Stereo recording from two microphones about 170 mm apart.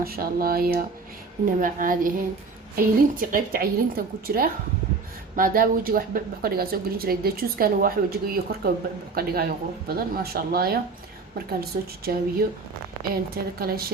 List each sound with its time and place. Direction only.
0.0 s speech: 60° right (ahead or behind)